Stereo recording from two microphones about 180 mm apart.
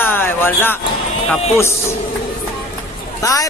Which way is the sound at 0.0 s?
10° left (ahead or behind).